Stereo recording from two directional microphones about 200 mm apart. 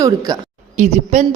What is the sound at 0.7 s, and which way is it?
Speech, 35° right (ahead or behind).